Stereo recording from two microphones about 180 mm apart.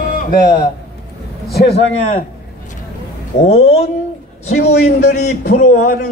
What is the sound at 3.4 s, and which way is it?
Speech, 35° left (ahead or behind).